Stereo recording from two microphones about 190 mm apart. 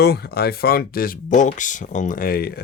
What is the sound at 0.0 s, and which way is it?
Speech, 55° left (ahead or behind).